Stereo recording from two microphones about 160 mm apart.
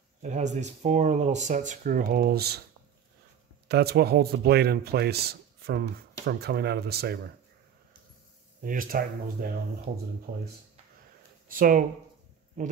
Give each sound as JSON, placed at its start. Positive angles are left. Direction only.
{"t": 0.2, "sound": "speech", "side_deg": -45}
{"t": 3.6, "sound": "speech", "side_deg": -85}
{"t": 8.6, "sound": "speech", "side_deg": -60}